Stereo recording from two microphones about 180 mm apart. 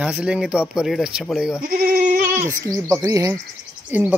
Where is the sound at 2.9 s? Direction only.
15° right (ahead or behind).